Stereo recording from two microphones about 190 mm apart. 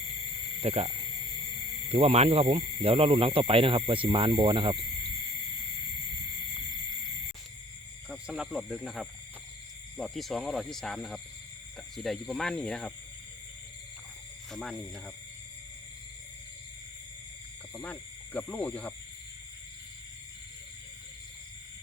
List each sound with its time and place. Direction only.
0.6 s speech: 30° right (ahead or behind)
1.9 s speech: 30° right (ahead or behind)
8.1 s speech: 5° right (ahead or behind)
14.5 s speech: centre (ahead or behind)
18.3 s speech: 10° left (ahead or behind)